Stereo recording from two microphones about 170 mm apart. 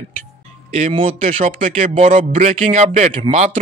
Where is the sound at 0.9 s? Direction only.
30° right (ahead or behind).